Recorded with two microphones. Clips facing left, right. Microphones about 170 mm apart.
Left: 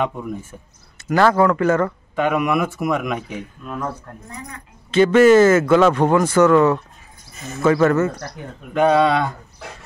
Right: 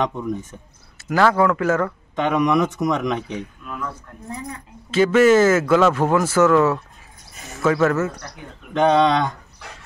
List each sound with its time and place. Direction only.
0.0 s speech: 10° left (ahead or behind)
3.6 s speech: 40° left (ahead or behind)
4.3 s speech: 30° right (ahead or behind)
4.9 s speech: centre (ahead or behind)